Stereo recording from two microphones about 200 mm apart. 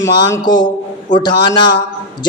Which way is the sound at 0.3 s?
20° left (ahead or behind).